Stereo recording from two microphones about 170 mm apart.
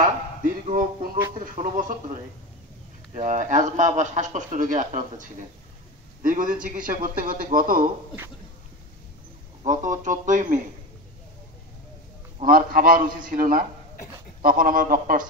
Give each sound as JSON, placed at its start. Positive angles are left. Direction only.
{"t": 0.7, "sound": "a man's voice", "side_deg": -50}
{"t": 3.2, "sound": "a man's voice", "side_deg": -45}
{"t": 9.6, "sound": "a man's voice", "side_deg": -45}
{"t": 12.4, "sound": "a man's voice", "side_deg": -55}